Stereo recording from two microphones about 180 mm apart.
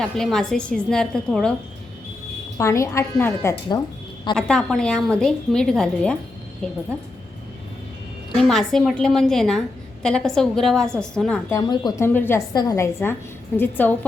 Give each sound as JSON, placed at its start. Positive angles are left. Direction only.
{"t": 0.0, "sound": "a woman's voice", "side_deg": 0}
{"t": 2.6, "sound": "a woman's voice", "side_deg": 15}
{"t": 4.4, "sound": "a woman's voice", "side_deg": 5}
{"t": 8.4, "sound": "a woman's voice", "side_deg": 0}
{"t": 11.5, "sound": "a woman's voice", "side_deg": 25}